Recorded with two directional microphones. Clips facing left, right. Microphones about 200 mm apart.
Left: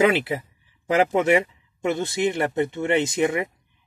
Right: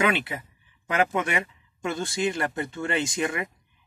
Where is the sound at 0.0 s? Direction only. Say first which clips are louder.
Left 6 dB; 25° left (ahead or behind).